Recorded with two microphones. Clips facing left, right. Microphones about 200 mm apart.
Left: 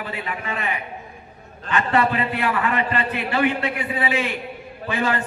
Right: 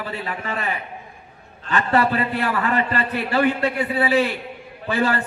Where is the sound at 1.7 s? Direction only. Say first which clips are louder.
Right 1 dB; 35° right (ahead or behind).